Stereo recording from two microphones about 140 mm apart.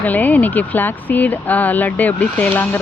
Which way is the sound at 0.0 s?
10° left (ahead or behind).